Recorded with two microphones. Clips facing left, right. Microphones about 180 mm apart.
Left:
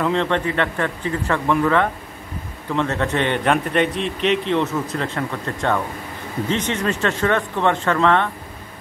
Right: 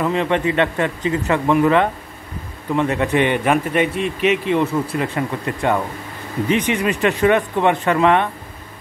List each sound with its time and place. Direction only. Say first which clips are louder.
0.0 s a man's voice: right 2 dB; 10° right (ahead or behind)